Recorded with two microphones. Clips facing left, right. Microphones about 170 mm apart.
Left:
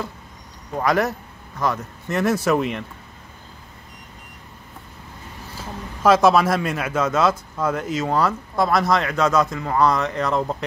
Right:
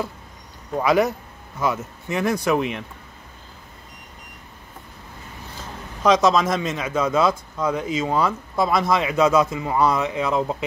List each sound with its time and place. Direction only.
0.7 s speech: centre (ahead or behind)
5.6 s speech: 5° left (ahead or behind)